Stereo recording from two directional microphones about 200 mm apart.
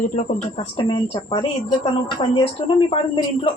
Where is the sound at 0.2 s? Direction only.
30° left (ahead or behind).